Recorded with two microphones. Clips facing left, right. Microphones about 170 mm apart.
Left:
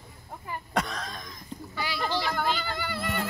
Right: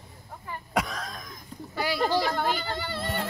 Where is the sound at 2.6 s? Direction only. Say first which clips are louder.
Right 1 dB; 30° right (ahead or behind).